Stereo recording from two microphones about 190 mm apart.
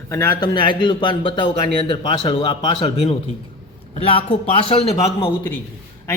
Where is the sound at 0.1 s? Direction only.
15° left (ahead or behind).